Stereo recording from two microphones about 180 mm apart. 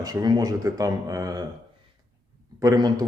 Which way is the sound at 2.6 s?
20° right (ahead or behind).